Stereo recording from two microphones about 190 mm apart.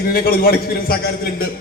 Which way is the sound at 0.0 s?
50° left (ahead or behind).